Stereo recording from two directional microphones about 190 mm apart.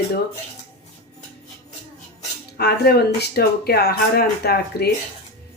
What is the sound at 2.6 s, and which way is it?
Speech, 55° left (ahead or behind).